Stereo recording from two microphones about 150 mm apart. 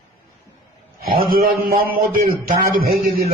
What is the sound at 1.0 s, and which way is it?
A man's voice, 75° right (ahead or behind).